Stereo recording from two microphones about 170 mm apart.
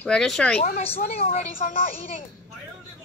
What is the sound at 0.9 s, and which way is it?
Speech, 35° left (ahead or behind).